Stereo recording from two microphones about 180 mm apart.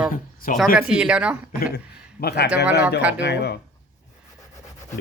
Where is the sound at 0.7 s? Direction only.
5° right (ahead or behind).